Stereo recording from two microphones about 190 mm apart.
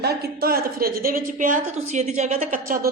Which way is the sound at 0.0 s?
55° right (ahead or behind).